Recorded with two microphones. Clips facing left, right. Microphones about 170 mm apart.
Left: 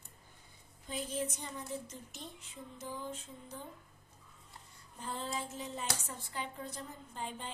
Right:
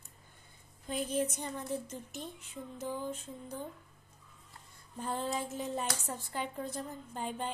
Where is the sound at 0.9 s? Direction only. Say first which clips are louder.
Right 5 dB; 55° right (ahead or behind).